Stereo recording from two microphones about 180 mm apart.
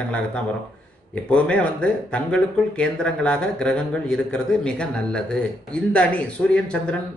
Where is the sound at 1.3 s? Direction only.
5° left (ahead or behind).